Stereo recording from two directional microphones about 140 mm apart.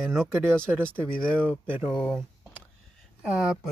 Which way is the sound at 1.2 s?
10° left (ahead or behind).